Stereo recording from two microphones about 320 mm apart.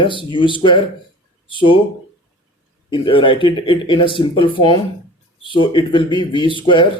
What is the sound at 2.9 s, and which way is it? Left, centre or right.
Speech, centre.